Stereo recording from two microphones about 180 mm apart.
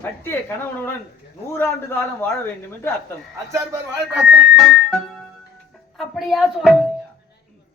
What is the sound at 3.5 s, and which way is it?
Speech, 20° right (ahead or behind).